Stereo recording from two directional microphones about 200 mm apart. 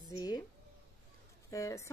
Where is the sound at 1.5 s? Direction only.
15° left (ahead or behind).